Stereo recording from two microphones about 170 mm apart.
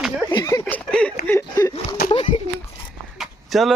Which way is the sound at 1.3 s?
20° left (ahead or behind).